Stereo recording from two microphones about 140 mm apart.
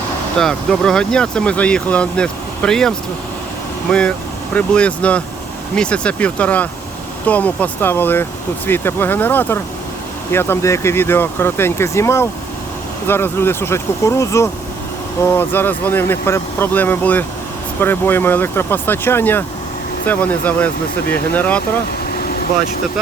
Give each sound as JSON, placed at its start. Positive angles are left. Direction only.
{"t": 0.3, "sound": "speech", "side_deg": 5}